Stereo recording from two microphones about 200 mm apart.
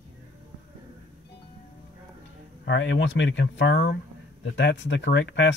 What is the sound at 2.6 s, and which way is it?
Speech, 65° left (ahead or behind).